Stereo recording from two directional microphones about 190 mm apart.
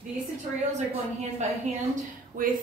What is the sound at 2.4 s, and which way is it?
Speech, 50° right (ahead or behind).